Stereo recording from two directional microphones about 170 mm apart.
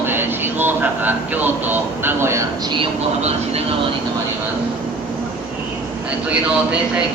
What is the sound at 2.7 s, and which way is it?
Speech, 35° right (ahead or behind).